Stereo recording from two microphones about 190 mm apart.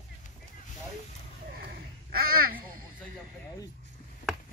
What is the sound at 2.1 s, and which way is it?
Babbling, 50° right (ahead or behind).